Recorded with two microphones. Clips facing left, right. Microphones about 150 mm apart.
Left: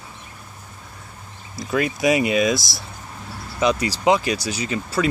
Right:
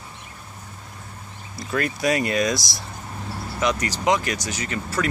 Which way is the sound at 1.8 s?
15° left (ahead or behind).